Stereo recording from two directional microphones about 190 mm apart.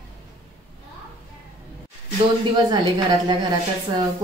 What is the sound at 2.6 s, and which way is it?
Speech, 20° right (ahead or behind).